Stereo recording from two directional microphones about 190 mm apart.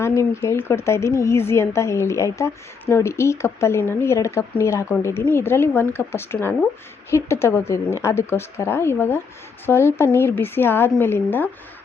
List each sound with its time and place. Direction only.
0.0 s speech: 15° left (ahead or behind)